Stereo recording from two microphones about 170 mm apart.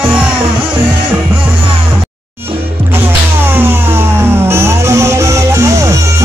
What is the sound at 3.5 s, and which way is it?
Music, 10° right (ahead or behind).